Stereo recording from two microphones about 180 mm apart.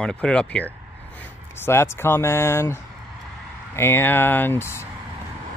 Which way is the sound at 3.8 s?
15° left (ahead or behind).